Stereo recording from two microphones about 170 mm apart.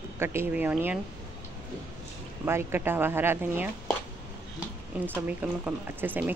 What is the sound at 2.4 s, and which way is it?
A woman's voice, 15° right (ahead or behind).